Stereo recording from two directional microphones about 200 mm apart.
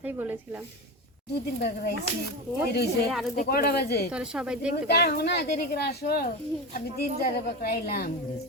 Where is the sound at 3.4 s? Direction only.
50° left (ahead or behind).